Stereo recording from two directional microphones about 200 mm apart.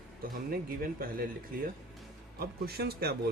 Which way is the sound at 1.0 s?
45° right (ahead or behind).